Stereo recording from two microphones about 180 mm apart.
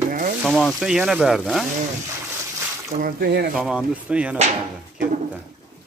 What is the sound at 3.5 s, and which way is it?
Speech, 5° right (ahead or behind).